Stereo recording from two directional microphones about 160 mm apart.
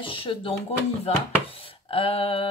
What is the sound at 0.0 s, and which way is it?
Speech, 35° left (ahead or behind).